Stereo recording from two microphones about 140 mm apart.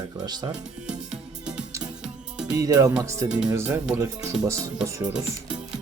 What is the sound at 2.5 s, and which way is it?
Speech, 25° right (ahead or behind).